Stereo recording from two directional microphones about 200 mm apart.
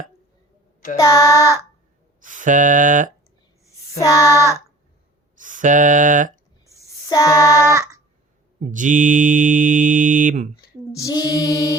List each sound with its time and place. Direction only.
0.9 s female singing: 15° left (ahead or behind)
2.2 s mantra: 40° right (ahead or behind)
3.9 s female singing: 15° left (ahead or behind)
5.4 s a sound: 40° right (ahead or behind)
6.8 s child singing: 15° left (ahead or behind)
8.7 s mantra: 40° right (ahead or behind)
10.9 s female singing: 15° left (ahead or behind)